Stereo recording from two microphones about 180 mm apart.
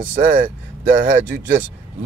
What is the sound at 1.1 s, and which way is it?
Speech, 80° right.